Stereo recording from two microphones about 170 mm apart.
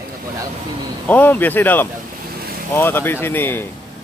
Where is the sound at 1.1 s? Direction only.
10° left (ahead or behind).